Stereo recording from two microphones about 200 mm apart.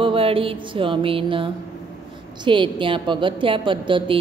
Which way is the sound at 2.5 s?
25° right (ahead or behind).